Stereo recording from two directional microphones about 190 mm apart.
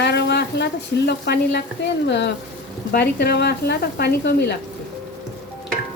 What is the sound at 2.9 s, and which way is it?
Speech, 55° left (ahead or behind).